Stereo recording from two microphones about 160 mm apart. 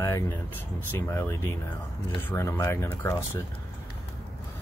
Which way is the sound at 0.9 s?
15° left (ahead or behind).